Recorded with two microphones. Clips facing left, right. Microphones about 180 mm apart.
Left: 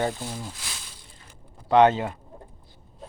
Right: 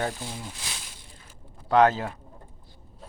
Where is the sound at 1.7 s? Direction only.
Centre (ahead or behind).